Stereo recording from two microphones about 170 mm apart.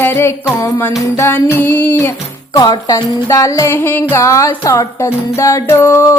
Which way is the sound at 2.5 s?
20° left (ahead or behind).